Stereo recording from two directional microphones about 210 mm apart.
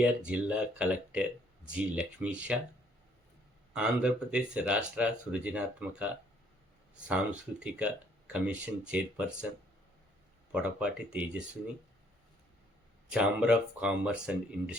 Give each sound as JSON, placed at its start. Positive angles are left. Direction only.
{"t": 0.3, "sound": "speech", "side_deg": -5}
{"t": 3.7, "sound": "speech", "side_deg": -5}
{"t": 10.5, "sound": "speech", "side_deg": -5}
{"t": 13.1, "sound": "speech", "side_deg": -5}